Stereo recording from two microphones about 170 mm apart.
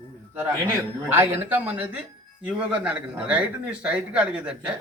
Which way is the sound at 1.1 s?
10° right (ahead or behind).